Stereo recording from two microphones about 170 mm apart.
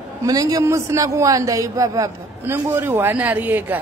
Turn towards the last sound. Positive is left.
turn(degrees=-10)  # may be behind; listen again after turning